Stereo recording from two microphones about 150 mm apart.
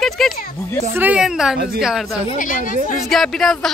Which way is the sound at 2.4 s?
60° left (ahead or behind).